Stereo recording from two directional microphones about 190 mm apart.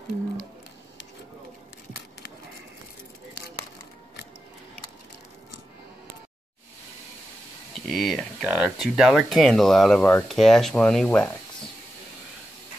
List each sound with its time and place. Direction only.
7.7 s speech: centre (ahead or behind)